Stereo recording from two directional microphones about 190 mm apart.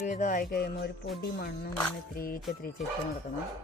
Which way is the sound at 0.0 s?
40° left (ahead or behind).